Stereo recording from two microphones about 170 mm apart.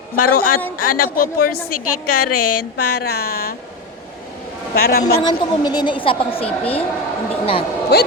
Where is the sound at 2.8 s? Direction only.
75° left (ahead or behind).